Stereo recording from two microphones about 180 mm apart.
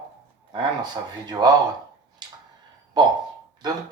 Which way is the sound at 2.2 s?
25° right (ahead or behind).